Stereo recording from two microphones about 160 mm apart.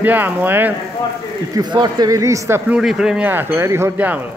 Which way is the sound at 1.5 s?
25° right (ahead or behind).